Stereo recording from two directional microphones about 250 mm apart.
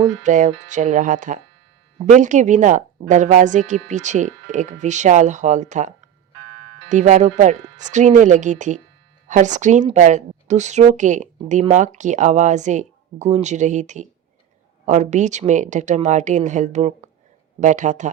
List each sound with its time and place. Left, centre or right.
0.2 s speech: right